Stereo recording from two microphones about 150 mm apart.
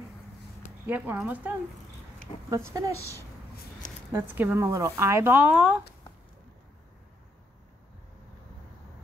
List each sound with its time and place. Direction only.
0.8 s speech: 10° right (ahead or behind)
2.5 s speech: 20° right (ahead or behind)
4.1 s speech: 10° right (ahead or behind)